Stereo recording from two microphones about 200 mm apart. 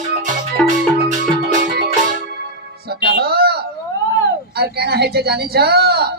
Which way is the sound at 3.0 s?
50° right (ahead or behind).